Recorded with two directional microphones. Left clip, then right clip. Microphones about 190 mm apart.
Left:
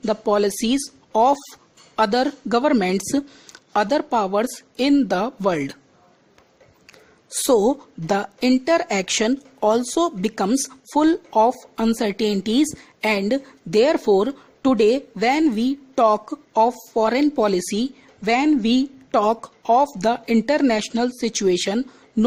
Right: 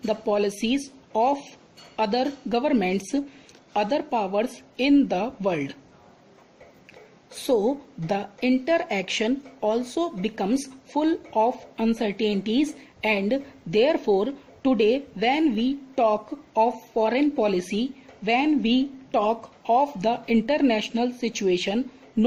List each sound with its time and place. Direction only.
0.0 s speech: 50° left (ahead or behind)
7.3 s speech: 50° left (ahead or behind)